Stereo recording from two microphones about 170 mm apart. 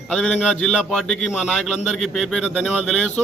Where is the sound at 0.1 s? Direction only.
5° left (ahead or behind).